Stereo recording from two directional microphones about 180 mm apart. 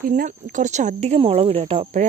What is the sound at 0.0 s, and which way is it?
Speech, 50° right (ahead or behind).